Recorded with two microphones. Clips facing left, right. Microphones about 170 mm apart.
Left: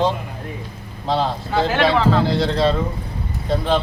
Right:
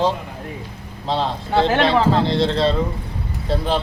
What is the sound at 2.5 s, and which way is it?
Speech, 25° right (ahead or behind).